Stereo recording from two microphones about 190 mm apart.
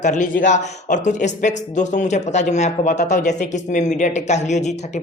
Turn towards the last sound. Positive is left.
turn(degrees=35)  # may be behind; listen again after turning